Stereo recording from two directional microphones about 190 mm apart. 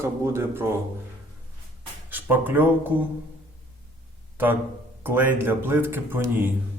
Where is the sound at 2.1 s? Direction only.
10° right (ahead or behind).